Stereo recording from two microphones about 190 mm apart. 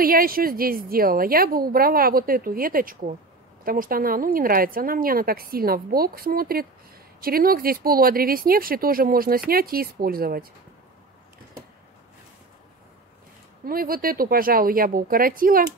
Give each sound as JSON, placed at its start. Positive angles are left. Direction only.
{"t": 0.0, "sound": "a woman's voice", "side_deg": -50}
{"t": 13.7, "sound": "a woman's voice", "side_deg": -50}